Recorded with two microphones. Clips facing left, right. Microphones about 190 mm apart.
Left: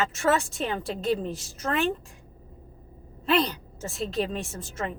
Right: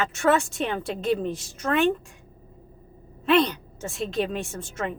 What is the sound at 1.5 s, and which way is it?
Speech, 35° left (ahead or behind).